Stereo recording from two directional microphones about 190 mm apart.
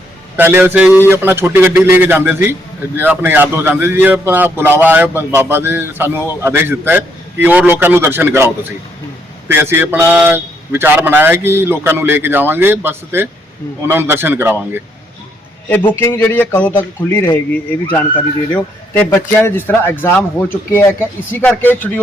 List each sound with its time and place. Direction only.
0.3 s a man's voice: 10° right (ahead or behind)
16.0 s a man's voice: 10° left (ahead or behind)